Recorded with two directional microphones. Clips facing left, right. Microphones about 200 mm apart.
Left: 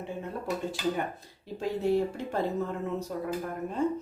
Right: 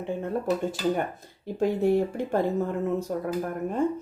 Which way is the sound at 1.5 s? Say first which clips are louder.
Right 4 dB; 55° right (ahead or behind).